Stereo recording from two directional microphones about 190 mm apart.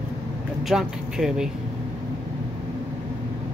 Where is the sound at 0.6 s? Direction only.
Centre (ahead or behind).